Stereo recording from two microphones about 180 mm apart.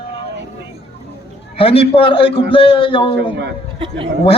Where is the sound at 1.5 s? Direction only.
30° left (ahead or behind).